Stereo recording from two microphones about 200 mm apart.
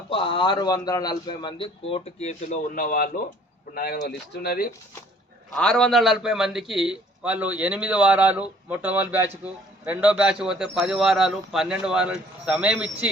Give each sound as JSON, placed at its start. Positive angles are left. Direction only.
{"t": 0.1, "sound": "a man's voice", "side_deg": 25}
{"t": 5.5, "sound": "a man's voice", "side_deg": 5}